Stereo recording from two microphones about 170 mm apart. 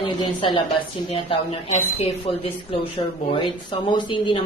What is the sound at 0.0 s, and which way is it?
Speech, 30° left (ahead or behind).